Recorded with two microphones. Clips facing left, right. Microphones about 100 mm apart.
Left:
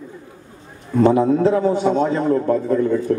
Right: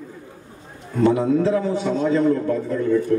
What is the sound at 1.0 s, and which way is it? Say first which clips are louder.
A man's voice: left 3 dB; 40° left (ahead or behind).